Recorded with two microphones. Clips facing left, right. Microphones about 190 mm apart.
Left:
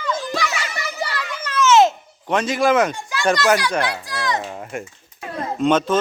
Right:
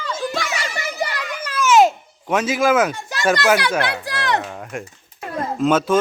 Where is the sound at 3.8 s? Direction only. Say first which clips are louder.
Right 1 dB; 65° right (ahead or behind).